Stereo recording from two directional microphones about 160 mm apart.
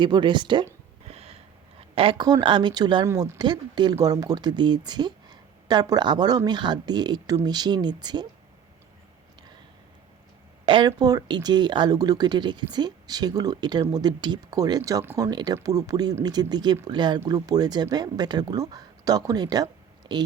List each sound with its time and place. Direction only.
0.0 s speech: 30° right (ahead or behind)
1.1 s a sound: 40° right (ahead or behind)
2.0 s speech: 30° right (ahead or behind)
10.7 s speech: 30° right (ahead or behind)